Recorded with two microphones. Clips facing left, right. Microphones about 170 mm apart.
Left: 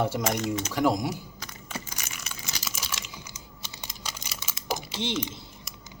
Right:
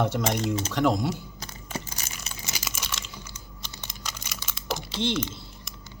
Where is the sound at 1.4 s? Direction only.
30° right (ahead or behind).